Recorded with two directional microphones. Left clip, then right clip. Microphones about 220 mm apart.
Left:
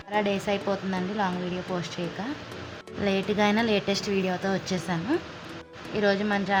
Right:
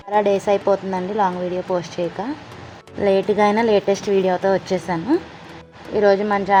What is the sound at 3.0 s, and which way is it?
A woman's voice, 10° right (ahead or behind).